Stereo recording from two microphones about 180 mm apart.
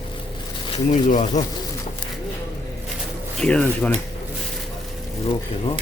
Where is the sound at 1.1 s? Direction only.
40° left (ahead or behind).